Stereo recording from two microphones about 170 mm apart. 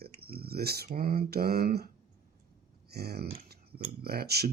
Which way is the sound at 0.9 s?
60° right (ahead or behind).